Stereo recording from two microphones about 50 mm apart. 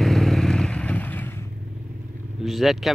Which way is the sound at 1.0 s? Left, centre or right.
Left.